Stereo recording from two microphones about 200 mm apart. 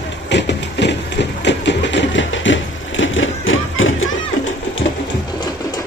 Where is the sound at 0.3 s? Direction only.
60° left (ahead or behind); by 4.1 s 80° left.